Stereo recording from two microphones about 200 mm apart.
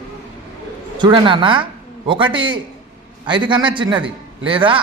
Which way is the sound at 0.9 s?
25° right (ahead or behind).